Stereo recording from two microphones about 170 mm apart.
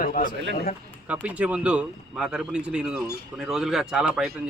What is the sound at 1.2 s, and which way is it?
Speech, 5° right (ahead or behind).